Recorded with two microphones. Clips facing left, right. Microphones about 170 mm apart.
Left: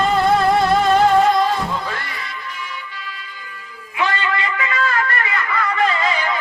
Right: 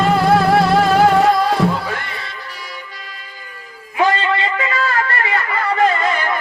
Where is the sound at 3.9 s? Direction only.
35° right (ahead or behind).